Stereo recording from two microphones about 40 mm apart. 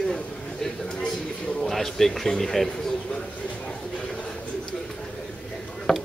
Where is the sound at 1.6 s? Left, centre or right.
Centre.